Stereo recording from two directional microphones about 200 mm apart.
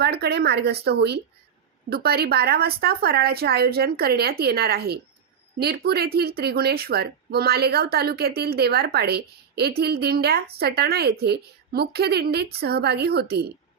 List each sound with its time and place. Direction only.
0.0 s a woman's voice: 55° right (ahead or behind)